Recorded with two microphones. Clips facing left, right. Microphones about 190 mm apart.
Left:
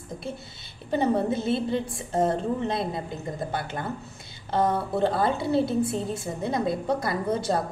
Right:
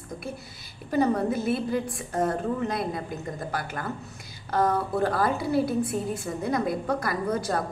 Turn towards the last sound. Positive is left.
turn(degrees=25)  # may be behind; listen again after turning